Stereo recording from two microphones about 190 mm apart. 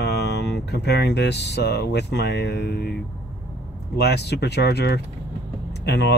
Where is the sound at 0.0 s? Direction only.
60° left (ahead or behind).